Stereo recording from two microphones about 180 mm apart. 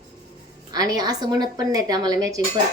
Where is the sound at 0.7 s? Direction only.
20° right (ahead or behind).